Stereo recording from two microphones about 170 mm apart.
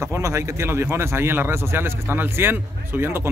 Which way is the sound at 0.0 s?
15° right (ahead or behind).